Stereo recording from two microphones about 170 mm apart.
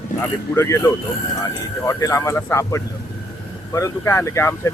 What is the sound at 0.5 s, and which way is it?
Speech, 15° left (ahead or behind).